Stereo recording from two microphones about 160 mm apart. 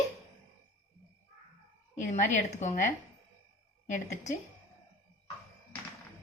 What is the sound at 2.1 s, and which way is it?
Speech, 45° left (ahead or behind).